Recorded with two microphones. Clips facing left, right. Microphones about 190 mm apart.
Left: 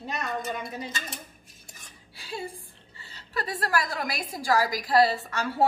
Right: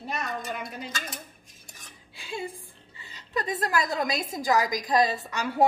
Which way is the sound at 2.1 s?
20° right (ahead or behind).